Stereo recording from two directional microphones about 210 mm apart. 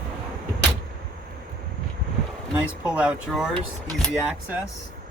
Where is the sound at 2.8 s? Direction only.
5° right (ahead or behind).